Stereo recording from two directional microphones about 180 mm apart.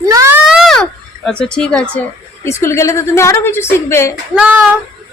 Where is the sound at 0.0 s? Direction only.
20° right (ahead or behind).